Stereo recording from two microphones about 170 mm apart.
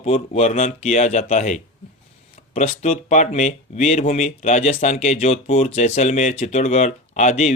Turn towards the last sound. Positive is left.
turn(degrees=40)  # may be behind; listen again after turning